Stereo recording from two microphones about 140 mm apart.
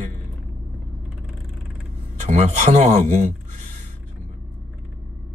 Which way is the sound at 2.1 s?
55° right (ahead or behind).